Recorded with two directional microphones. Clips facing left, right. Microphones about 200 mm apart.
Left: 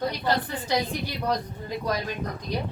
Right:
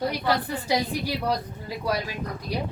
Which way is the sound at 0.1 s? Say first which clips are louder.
Right 1 dB; 10° right (ahead or behind).